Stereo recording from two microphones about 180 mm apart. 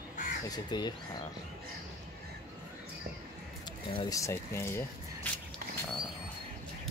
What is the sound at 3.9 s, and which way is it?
Speech, 30° left (ahead or behind).